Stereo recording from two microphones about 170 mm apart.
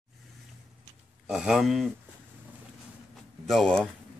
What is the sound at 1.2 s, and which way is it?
Speech, 5° right (ahead or behind).